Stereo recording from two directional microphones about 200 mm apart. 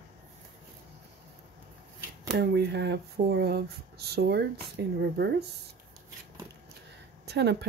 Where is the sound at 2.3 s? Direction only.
55° right (ahead or behind).